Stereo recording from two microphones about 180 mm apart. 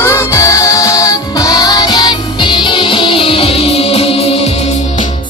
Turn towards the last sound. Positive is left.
turn(degrees=30)  # may be behind; listen again after turning